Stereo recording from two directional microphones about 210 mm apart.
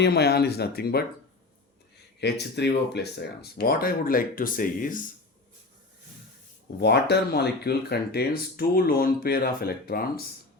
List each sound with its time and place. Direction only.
0.0 s speech: 50° left (ahead or behind)
6.7 s speech: 50° left (ahead or behind)